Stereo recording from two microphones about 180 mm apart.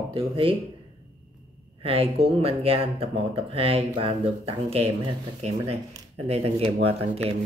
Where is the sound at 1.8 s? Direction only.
30° right (ahead or behind).